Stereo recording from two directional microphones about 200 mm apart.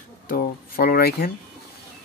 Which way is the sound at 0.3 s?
45° left (ahead or behind).